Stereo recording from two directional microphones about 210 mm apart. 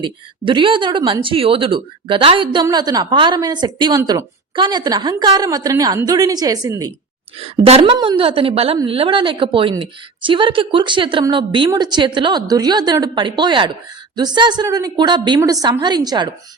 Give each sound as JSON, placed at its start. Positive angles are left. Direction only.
{"t": 0.0, "sound": "a woman's voice", "side_deg": -25}
{"t": 7.3, "sound": "a woman's voice", "side_deg": -25}